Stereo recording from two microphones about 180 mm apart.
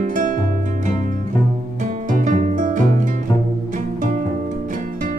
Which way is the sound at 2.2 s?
45° right (ahead or behind).